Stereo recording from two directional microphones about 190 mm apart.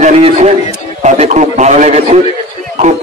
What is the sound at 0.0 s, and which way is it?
A man's voice, 35° right (ahead or behind).